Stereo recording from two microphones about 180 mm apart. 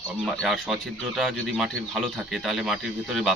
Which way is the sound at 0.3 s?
Centre (ahead or behind).